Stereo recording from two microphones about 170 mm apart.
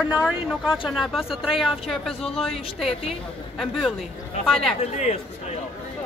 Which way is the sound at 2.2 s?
35° left (ahead or behind).